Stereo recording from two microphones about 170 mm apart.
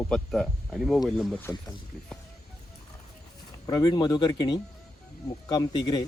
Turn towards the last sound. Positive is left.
turn(degrees=25)  # may be behind; listen again after turning